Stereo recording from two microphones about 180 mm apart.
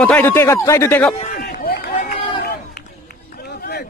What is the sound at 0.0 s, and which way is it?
Speech, 10° left (ahead or behind).